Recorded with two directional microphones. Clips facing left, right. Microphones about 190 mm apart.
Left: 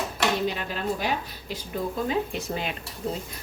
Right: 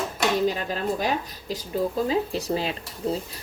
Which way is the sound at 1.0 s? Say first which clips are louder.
Right 3 dB; 40° right (ahead or behind).